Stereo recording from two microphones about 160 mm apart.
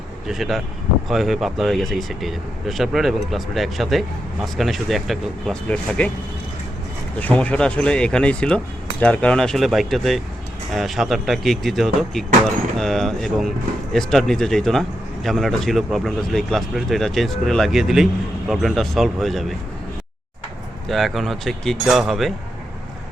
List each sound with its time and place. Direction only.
0.3 s speech: centre (ahead or behind)
7.2 s speech: 10° left (ahead or behind)
20.8 s speech: centre (ahead or behind)